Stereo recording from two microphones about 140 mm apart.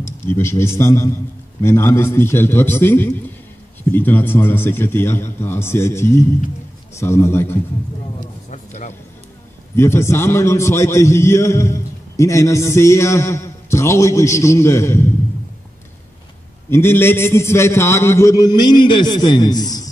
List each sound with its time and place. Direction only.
0.0 s a man's voice: 20° left (ahead or behind)
8.5 s a sound: 60° left (ahead or behind)
9.8 s a man's voice: 20° left (ahead or behind)
16.7 s a man's voice: 15° left (ahead or behind)